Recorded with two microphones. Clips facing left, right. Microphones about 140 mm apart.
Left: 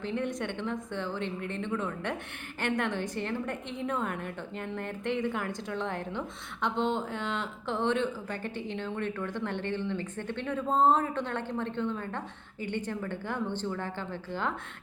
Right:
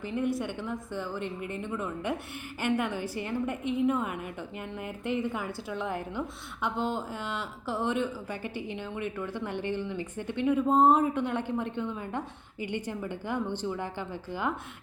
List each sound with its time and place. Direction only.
0.0 s a woman's voice: 5° right (ahead or behind)